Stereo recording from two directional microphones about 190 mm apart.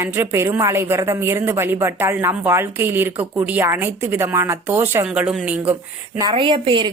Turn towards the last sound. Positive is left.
turn(degrees=-25)  # may be behind; listen again after turning